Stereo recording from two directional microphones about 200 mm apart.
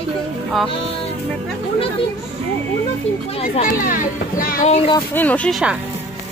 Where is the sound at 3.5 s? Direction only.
40° left (ahead or behind).